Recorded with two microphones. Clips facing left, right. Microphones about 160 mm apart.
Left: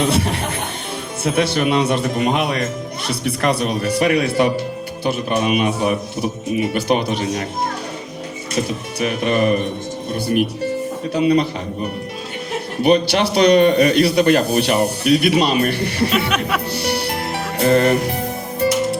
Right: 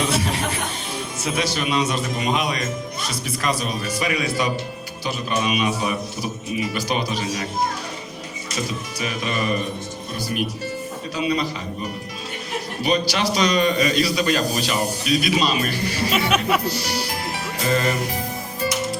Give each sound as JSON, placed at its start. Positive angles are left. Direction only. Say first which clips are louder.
{"t": 0.0, "sound": "music", "louder": "left 4 dB", "side_deg": 60}
{"t": 1.2, "sound": "a man's voice", "louder": "left 7 dB", "side_deg": 60}
{"t": 8.5, "sound": "a man's voice", "louder": "left 6 dB", "side_deg": 60}
{"t": 16.6, "sound": "music", "louder": "left 4 dB", "side_deg": 60}